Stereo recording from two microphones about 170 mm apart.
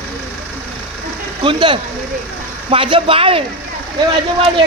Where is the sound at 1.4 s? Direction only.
30° right (ahead or behind).